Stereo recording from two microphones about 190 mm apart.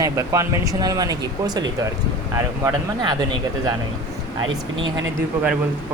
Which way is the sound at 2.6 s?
20° right (ahead or behind).